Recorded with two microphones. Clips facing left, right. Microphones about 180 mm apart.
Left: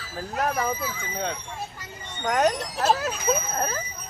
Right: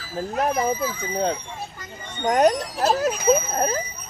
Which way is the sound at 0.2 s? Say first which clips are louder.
Right 4 dB; 30° right (ahead or behind).